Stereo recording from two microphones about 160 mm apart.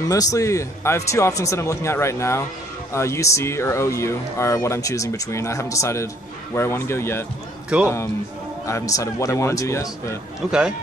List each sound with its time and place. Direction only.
0.1 s a man's voice: 20° left (ahead or behind)
7.7 s a man's voice: 5° right (ahead or behind)
8.6 s a man's voice: 20° left (ahead or behind)